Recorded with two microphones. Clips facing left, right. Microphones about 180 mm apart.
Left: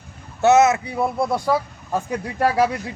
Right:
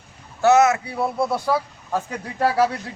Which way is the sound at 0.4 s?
20° left (ahead or behind).